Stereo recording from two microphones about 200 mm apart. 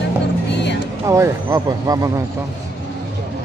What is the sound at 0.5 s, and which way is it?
Music, 60° left (ahead or behind).